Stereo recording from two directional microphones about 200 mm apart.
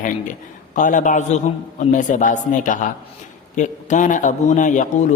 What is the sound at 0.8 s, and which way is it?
A man's voice, 40° left (ahead or behind).